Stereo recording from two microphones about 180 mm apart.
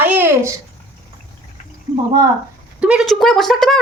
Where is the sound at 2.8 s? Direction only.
5° right (ahead or behind).